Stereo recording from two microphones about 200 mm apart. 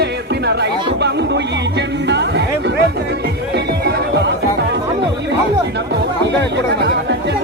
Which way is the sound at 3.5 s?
55° right (ahead or behind).